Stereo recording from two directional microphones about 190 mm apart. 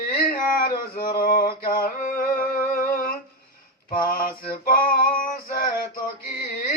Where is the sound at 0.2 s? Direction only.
50° left (ahead or behind).